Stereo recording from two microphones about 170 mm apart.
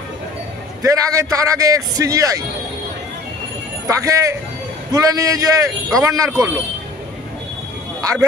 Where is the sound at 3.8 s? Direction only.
20° right (ahead or behind).